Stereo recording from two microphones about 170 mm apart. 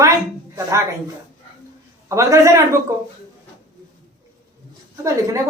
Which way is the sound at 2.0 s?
15° right (ahead or behind).